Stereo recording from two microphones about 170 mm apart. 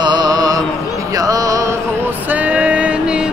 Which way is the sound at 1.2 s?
20° right (ahead or behind).